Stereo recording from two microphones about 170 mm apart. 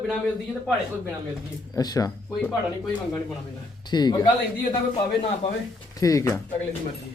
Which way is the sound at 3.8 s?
25° left (ahead or behind).